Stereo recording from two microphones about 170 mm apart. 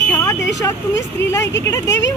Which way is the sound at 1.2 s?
90° left.